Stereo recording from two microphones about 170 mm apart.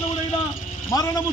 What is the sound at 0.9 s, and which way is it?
Speech, 20° left (ahead or behind).